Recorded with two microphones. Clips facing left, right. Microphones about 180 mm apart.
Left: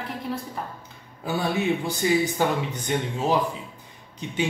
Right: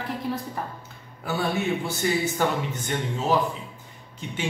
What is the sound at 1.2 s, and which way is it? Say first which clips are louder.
A man's voice: left 1 dB; 15° left (ahead or behind).